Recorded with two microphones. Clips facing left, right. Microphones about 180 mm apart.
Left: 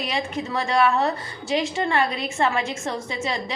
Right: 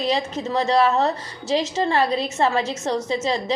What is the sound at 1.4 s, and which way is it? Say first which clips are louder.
A woman's voice: right 2 dB; 35° right (ahead or behind).